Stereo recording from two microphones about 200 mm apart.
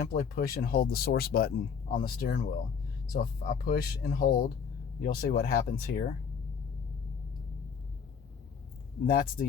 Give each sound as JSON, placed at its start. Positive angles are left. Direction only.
{"t": 0.0, "sound": "speech", "side_deg": 45}
{"t": 9.0, "sound": "speech", "side_deg": 45}